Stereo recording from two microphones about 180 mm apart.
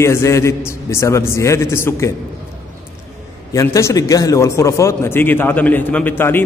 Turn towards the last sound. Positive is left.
turn(degrees=10)  # may be behind; listen again after turning